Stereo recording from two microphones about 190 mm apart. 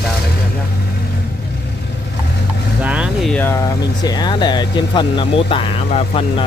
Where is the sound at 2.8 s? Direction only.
5° right (ahead or behind); by 6.4 s 30° left (ahead or behind).